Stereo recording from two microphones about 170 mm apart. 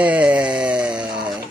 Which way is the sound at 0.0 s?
10° right (ahead or behind).